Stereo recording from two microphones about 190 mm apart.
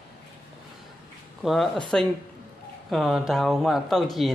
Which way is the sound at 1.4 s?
Centre (ahead or behind).